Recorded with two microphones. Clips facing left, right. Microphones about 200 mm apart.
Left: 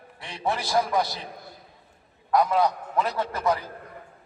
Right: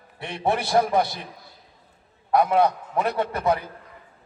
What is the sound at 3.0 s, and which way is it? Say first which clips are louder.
Speech: right 2 dB; 60° right (ahead or behind).